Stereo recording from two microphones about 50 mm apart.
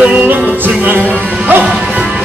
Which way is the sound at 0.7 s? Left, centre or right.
Right.